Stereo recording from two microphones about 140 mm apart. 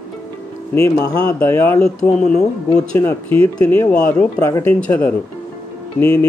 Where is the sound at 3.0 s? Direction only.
15° left (ahead or behind).